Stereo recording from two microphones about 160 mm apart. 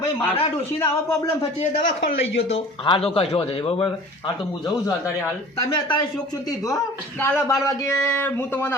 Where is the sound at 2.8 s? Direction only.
35° left (ahead or behind).